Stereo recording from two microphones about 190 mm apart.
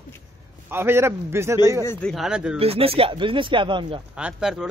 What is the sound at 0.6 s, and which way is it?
A man's voice, 10° right (ahead or behind).